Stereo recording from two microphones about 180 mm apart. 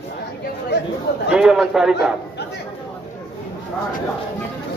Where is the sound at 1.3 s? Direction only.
5° right (ahead or behind).